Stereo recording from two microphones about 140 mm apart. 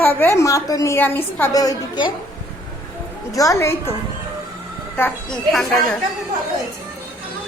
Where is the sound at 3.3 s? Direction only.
25° left (ahead or behind).